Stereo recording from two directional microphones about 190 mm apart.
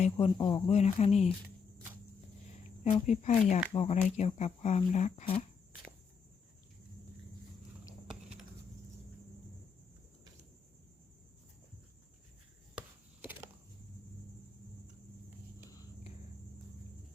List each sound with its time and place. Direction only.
0.0 s speech: 30° left (ahead or behind)
2.9 s speech: 40° left (ahead or behind)